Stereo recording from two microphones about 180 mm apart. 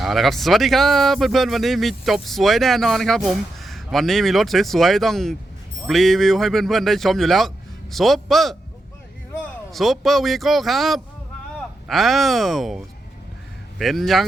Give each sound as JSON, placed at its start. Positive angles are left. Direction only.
{"t": 0.0, "sound": "speech", "side_deg": 0}